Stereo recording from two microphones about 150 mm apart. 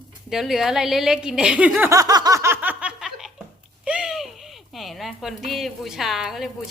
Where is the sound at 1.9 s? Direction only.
25° right (ahead or behind); by 6.5 s centre (ahead or behind).